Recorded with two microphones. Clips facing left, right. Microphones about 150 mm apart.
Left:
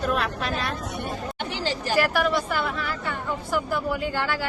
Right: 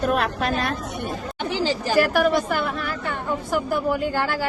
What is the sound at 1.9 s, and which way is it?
A woman's voice, 45° right (ahead or behind).